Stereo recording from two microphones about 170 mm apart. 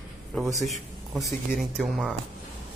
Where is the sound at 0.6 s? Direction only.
Centre (ahead or behind).